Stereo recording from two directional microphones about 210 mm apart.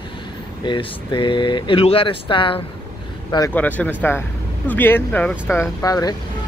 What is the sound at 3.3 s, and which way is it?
Speech, 10° left (ahead or behind).